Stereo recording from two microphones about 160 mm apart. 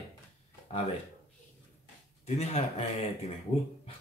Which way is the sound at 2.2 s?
40° left (ahead or behind).